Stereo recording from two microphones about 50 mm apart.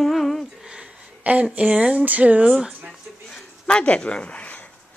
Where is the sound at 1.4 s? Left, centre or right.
Right.